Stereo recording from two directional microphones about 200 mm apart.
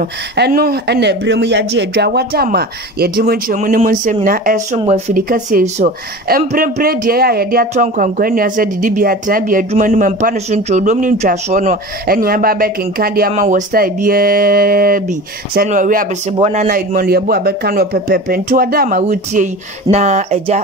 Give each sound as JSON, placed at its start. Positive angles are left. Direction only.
{"t": 0.4, "sound": "speech", "side_deg": -50}
{"t": 4.7, "sound": "speech", "side_deg": -30}
{"t": 5.3, "sound": "speech", "side_deg": -45}
{"t": 16.3, "sound": "speech", "side_deg": -30}
{"t": 16.6, "sound": "speech", "side_deg": -45}